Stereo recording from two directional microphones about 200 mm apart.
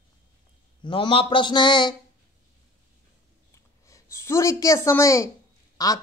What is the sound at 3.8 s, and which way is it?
A woman's voice, 15° left (ahead or behind).